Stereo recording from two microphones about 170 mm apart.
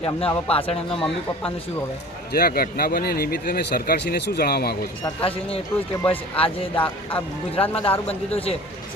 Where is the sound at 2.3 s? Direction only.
60° left (ahead or behind).